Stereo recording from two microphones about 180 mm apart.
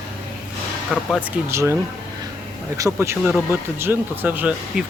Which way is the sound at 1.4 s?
15° right (ahead or behind).